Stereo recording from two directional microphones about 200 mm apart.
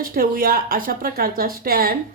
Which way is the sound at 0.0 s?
45° right (ahead or behind).